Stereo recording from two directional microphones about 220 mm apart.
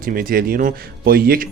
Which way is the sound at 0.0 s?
40° right (ahead or behind).